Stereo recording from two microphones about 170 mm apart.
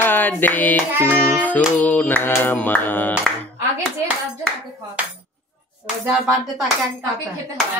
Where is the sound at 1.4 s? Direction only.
10° left (ahead or behind).